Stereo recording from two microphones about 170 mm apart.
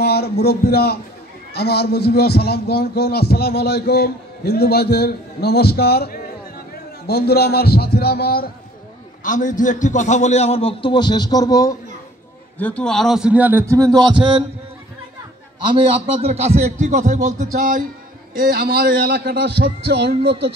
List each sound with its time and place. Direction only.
0.0 s a man's voice: 70° left (ahead or behind)
9.2 s a man's voice: 50° left (ahead or behind); by 11.7 s 20° left (ahead or behind)
12.5 s a man's voice: 10° left (ahead or behind); by 14.4 s 30° right (ahead or behind)
15.6 s speech: 30° right (ahead or behind); by 17.8 s 50° right (ahead or behind)
18.3 s speech: 60° right (ahead or behind); by 20.3 s 80° right